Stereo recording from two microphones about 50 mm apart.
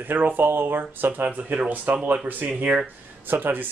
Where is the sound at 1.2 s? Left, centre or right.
Right.